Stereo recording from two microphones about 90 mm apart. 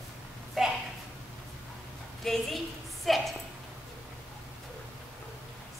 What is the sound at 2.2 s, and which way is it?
A woman's voice, centre (ahead or behind).